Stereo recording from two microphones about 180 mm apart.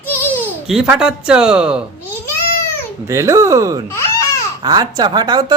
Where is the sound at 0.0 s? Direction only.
10° left (ahead or behind).